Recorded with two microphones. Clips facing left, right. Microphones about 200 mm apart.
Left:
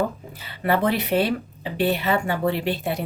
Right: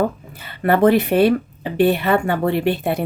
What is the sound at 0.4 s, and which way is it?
A woman's voice, 55° right (ahead or behind).